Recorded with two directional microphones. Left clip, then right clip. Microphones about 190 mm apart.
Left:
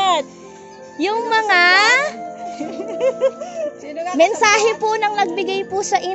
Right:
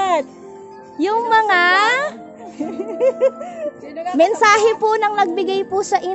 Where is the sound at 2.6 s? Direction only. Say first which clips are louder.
Right 2 dB; 45° right (ahead or behind).